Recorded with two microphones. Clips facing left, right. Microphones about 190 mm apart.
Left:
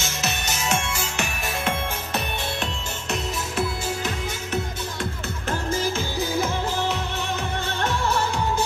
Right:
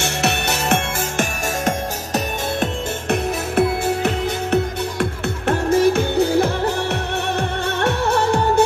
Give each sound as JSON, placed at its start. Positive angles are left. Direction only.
{"t": 0.0, "sound": "music", "side_deg": -65}